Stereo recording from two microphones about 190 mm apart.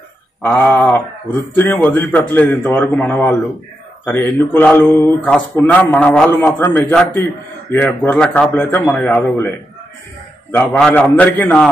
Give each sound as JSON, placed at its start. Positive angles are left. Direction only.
{"t": 0.4, "sound": "speech", "side_deg": 10}
{"t": 6.9, "sound": "a man's voice", "side_deg": 5}
{"t": 10.5, "sound": "speech", "side_deg": 5}